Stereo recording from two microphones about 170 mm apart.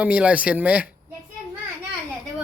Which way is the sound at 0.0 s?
5° right (ahead or behind).